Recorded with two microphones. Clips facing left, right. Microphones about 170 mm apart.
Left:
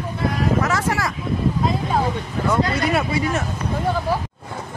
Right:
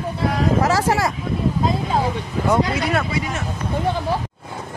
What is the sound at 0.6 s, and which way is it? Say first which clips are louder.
Speech: right 3 dB; 30° right (ahead or behind).